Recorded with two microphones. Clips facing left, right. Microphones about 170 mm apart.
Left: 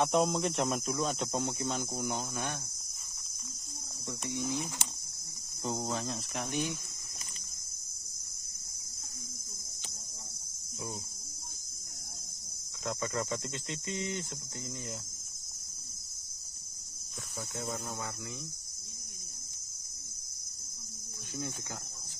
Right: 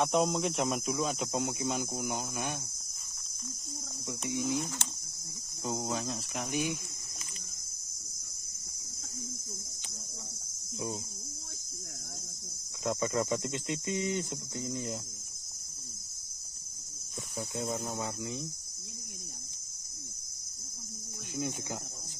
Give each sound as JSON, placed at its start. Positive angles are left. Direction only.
{"t": 0.0, "sound": "speech", "side_deg": 0}
{"t": 4.3, "sound": "speech", "side_deg": -5}
{"t": 4.6, "sound": "speech", "side_deg": 10}
{"t": 5.6, "sound": "speech", "side_deg": 0}
{"t": 12.8, "sound": "speech", "side_deg": -20}
{"t": 17.6, "sound": "speech", "side_deg": -5}
{"t": 17.9, "sound": "speech", "side_deg": -20}